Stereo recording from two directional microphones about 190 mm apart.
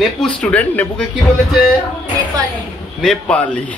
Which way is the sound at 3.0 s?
5° left (ahead or behind).